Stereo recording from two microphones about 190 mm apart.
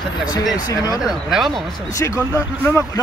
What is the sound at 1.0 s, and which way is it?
Speech, centre (ahead or behind).